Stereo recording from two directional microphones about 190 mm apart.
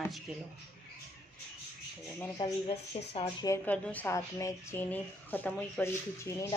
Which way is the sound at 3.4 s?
10° left (ahead or behind).